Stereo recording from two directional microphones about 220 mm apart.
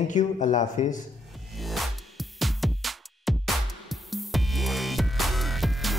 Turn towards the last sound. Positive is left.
turn(degrees=0)  # may be behind; listen again after turning